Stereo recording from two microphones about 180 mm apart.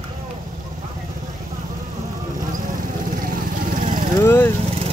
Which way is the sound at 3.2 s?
50° right (ahead or behind).